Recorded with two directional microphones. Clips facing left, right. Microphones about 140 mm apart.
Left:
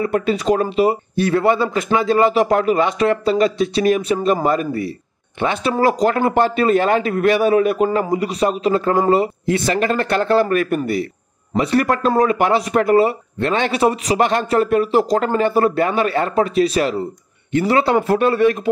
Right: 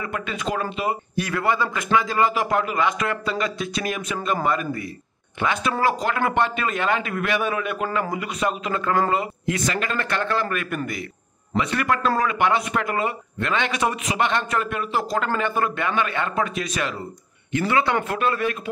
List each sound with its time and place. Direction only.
0.0 s speech: 35° left (ahead or behind)